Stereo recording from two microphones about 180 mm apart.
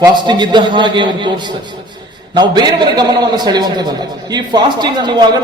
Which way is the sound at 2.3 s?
25° right (ahead or behind).